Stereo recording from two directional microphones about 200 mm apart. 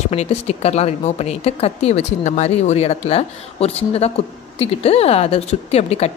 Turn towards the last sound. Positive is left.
turn(degrees=30)  # may be behind; listen again after turning